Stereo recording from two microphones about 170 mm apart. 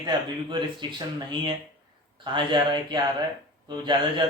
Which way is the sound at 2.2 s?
25° right (ahead or behind).